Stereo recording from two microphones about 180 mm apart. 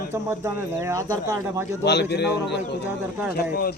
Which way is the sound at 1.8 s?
70° left (ahead or behind).